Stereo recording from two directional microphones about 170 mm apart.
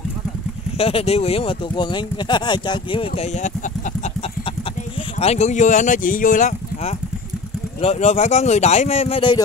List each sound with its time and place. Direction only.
0.7 s speech: 35° left (ahead or behind)
5.2 s speech: 40° left (ahead or behind)